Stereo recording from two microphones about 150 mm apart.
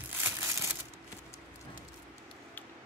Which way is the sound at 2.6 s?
10° left (ahead or behind).